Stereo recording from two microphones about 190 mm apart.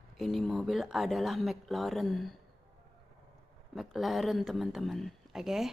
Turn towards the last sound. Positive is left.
turn(degrees=0)  # may be behind; listen again after turning